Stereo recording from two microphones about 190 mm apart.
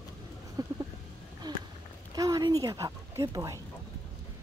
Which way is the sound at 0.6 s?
20° right (ahead or behind).